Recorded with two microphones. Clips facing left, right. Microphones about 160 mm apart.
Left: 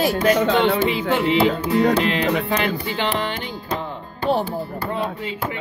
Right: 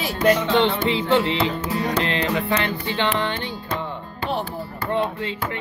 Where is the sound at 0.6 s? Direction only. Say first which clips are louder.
Left 2 dB; 10° left (ahead or behind).